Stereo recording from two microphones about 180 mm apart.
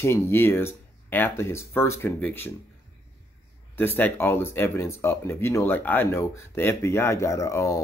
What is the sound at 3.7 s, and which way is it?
Speech, 10° left (ahead or behind).